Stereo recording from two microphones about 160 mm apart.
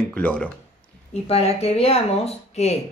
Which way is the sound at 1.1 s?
40° left (ahead or behind).